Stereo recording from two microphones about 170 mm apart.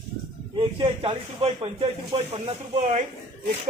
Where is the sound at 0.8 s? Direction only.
30° right (ahead or behind).